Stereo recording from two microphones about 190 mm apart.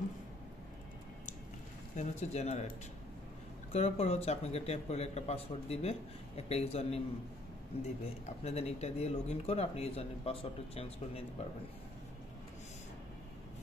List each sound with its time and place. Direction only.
2.0 s speech: 35° left (ahead or behind)
3.7 s speech: 35° left (ahead or behind)